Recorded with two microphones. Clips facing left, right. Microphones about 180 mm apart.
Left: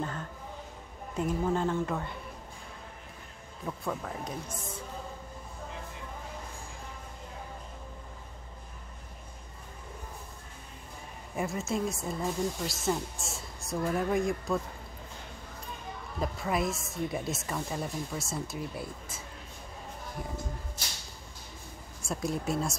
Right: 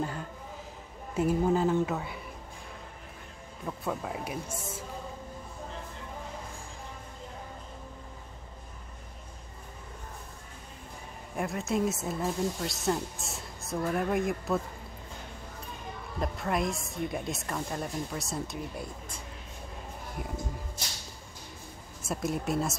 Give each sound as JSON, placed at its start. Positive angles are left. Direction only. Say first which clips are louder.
{"t": 1.1, "sound": "a woman's voice", "louder": "right 4 dB", "side_deg": -5}
{"t": 3.6, "sound": "speech", "louder": "right 1 dB", "side_deg": -5}
{"t": 11.3, "sound": "a woman's voice", "louder": "right 2 dB", "side_deg": 0}
{"t": 16.2, "sound": "a woman's voice", "louder": "even", "side_deg": 0}
{"t": 22.0, "sound": "a woman's voice", "louder": "right 1 dB", "side_deg": 0}